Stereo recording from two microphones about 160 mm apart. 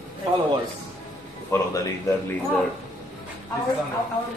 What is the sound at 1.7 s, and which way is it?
Speech, 20° left (ahead or behind).